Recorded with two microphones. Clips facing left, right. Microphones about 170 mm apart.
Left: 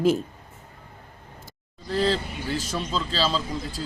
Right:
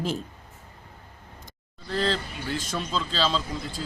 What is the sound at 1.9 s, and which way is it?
Speech, 5° left (ahead or behind).